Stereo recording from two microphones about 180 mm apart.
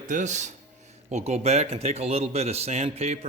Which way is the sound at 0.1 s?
40° right (ahead or behind).